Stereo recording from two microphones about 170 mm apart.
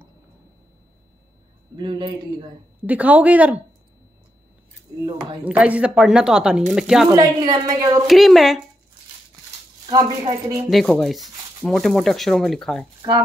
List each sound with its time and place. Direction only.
1.8 s a woman's voice: 30° right (ahead or behind)
2.8 s a woman's voice: 10° right (ahead or behind)
5.0 s a woman's voice: 25° right (ahead or behind)
5.4 s a woman's voice: 10° right (ahead or behind)
7.2 s a woman's voice: 25° right (ahead or behind)
8.1 s speech: centre (ahead or behind)
10.2 s a woman's voice: 20° right (ahead or behind)
10.7 s speech: centre (ahead or behind)